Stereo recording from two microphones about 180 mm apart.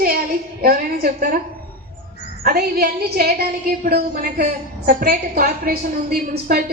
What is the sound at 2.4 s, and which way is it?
A woman's voice, 60° right (ahead or behind).